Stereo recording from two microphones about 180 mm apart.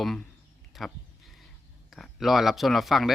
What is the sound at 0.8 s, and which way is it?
Speech, centre (ahead or behind).